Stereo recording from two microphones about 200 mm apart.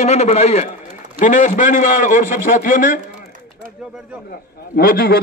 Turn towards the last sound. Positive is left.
turn(degrees=50)  # may be behind; listen again after turning